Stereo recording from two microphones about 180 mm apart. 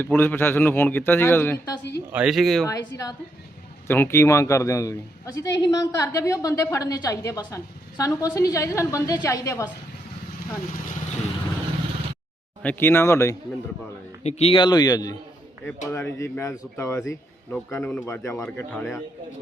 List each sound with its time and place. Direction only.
0.0 s a woman's voice: 10° left (ahead or behind)
2.1 s speech: centre (ahead or behind)
2.6 s a man's voice: 20° left (ahead or behind)
12.6 s a woman's voice: 10° left (ahead or behind)
14.3 s a man's voice: 35° left (ahead or behind); by 19.0 s 15° left (ahead or behind)